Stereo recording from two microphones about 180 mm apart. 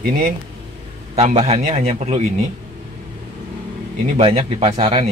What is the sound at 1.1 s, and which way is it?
A man's voice, 35° right (ahead or behind).